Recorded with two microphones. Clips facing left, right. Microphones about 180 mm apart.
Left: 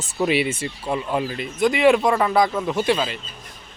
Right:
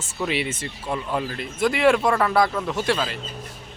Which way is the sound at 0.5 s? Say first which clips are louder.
Left 3 dB; 25° left (ahead or behind).